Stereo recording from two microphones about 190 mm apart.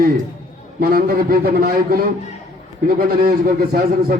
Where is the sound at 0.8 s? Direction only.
55° right (ahead or behind).